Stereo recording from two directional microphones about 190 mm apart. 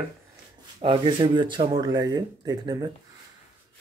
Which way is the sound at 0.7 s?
25° right (ahead or behind).